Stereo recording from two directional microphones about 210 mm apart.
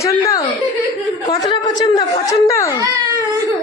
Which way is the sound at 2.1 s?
30° left (ahead or behind).